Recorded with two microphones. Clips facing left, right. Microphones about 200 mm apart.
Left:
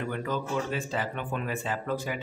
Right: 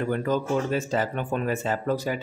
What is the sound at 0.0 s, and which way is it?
Speech, 40° right (ahead or behind).